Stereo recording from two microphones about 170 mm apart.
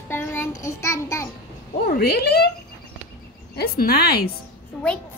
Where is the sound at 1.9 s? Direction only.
65° left (ahead or behind).